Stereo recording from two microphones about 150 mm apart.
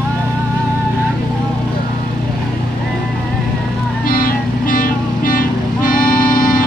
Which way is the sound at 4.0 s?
70° left (ahead or behind).